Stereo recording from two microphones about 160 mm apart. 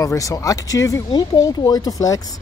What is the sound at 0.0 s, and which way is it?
Speech, 20° left (ahead or behind).